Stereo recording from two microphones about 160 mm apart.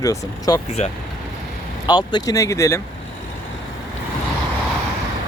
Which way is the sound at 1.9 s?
25° left (ahead or behind).